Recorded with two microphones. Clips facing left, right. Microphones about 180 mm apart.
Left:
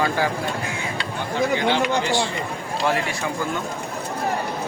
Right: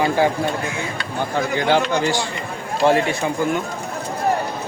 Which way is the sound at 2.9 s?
25° right (ahead or behind).